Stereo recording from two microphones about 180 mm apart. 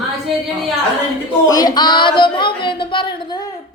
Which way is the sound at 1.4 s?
20° left (ahead or behind).